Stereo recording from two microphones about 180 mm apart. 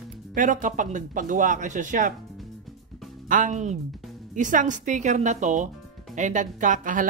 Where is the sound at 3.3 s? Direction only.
45° right (ahead or behind).